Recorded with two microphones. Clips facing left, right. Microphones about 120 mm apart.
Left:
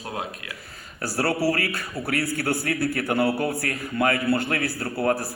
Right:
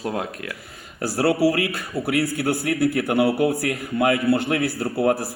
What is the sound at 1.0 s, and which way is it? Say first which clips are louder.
A man's voice: right 5 dB; 15° right (ahead or behind).